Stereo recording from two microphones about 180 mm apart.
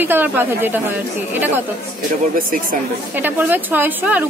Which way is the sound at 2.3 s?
50° right (ahead or behind).